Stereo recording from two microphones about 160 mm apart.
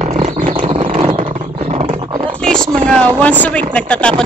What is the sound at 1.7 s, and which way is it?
Roar, 35° right (ahead or behind).